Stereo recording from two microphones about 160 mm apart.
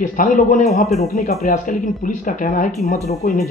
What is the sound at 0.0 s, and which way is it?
Speech, 55° left (ahead or behind).